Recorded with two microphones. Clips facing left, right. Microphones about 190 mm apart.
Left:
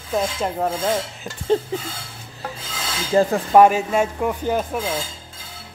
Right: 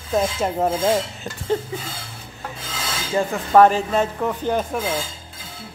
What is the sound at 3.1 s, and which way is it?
Speech, 35° left (ahead or behind).